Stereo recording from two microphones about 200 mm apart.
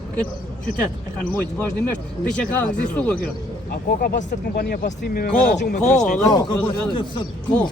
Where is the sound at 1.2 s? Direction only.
10° left (ahead or behind).